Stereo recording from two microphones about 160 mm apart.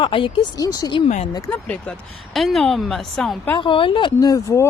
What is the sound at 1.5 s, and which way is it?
Speech, 10° left (ahead or behind).